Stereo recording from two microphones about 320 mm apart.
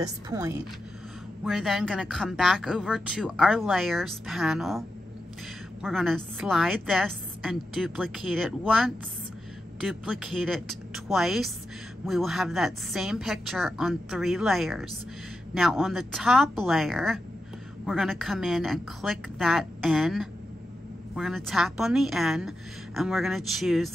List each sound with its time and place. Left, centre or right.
0.0 s a woman's voice: centre